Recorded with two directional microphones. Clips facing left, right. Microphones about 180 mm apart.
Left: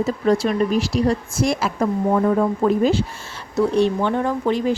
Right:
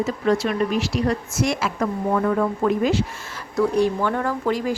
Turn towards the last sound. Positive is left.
turn(degrees=25)  # may be behind; listen again after turning